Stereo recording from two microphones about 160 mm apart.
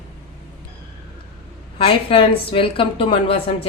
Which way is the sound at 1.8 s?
35° left (ahead or behind).